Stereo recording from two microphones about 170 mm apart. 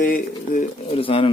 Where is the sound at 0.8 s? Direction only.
35° left (ahead or behind).